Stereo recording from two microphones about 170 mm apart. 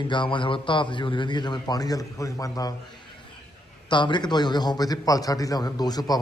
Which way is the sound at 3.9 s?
25° left (ahead or behind).